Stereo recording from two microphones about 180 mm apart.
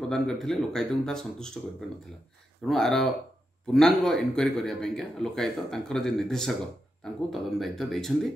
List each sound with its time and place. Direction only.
0.1 s speech: centre (ahead or behind)
2.6 s speech: centre (ahead or behind)